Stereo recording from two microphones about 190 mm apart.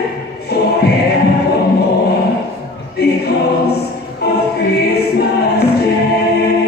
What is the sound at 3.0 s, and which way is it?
Choir, 55° left (ahead or behind).